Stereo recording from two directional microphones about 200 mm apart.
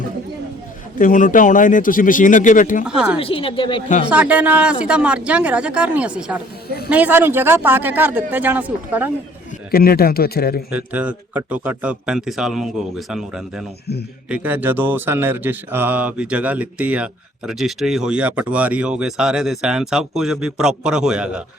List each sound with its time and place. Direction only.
0.9 s a man's voice: 40° left (ahead or behind)
2.8 s speech: 5° right (ahead or behind)
3.2 s speech: 25° left (ahead or behind)
4.1 s speech: 5° right (ahead or behind)
9.7 s speech: 50° left (ahead or behind)
10.7 s speech: 10° right (ahead or behind)